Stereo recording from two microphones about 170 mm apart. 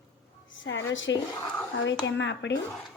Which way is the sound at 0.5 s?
90° left.